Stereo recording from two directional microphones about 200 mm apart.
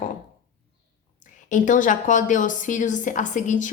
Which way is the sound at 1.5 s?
40° left (ahead or behind).